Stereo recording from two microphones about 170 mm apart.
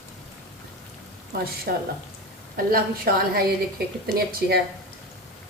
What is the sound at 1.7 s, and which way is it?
A woman's voice, 65° right (ahead or behind).